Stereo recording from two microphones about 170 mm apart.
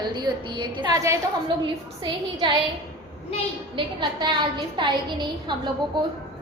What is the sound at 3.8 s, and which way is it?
A woman's voice, 30° right (ahead or behind).